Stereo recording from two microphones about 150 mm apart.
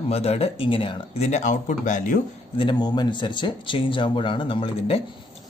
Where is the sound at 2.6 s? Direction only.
30° left (ahead or behind).